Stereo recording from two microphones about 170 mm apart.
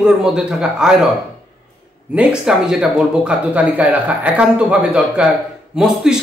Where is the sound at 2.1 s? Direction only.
5° right (ahead or behind).